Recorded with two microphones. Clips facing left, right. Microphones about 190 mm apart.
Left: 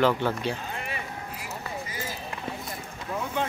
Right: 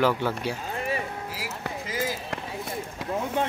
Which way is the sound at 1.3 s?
85° right.